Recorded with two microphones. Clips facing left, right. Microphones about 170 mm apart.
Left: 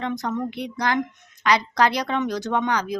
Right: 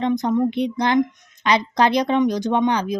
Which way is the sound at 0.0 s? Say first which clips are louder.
Right 7 dB; 20° right (ahead or behind).